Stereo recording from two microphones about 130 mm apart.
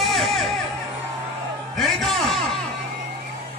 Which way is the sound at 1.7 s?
Centre (ahead or behind).